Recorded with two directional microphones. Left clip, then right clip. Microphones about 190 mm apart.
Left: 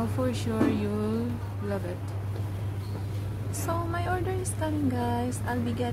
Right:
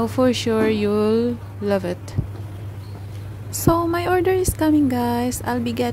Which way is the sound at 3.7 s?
45° right (ahead or behind).